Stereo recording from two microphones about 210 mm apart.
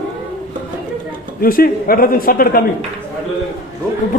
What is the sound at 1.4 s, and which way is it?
A man's voice, 45° left (ahead or behind).